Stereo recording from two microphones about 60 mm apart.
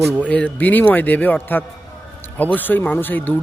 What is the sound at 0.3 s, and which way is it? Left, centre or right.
Speech, left.